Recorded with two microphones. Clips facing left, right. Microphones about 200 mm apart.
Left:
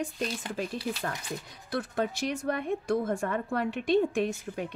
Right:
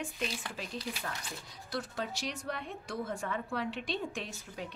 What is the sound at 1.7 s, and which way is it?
Speech, 55° left (ahead or behind).